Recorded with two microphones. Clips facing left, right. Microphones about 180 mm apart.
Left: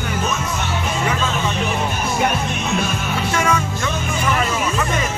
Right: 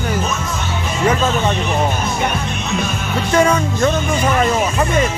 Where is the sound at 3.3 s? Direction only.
35° right (ahead or behind).